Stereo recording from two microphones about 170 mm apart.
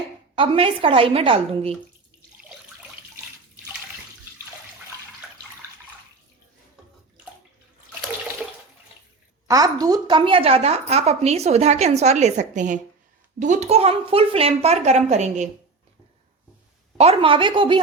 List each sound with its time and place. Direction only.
0.3 s a woman's voice: 30° right (ahead or behind)
2.4 s water: 5° right (ahead or behind)
9.5 s a woman's voice: 20° right (ahead or behind); by 15.4 s 45° right (ahead or behind)
17.0 s a woman's voice: 35° right (ahead or behind)